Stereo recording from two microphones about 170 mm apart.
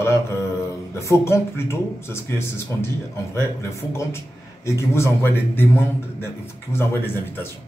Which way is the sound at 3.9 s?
15° left (ahead or behind).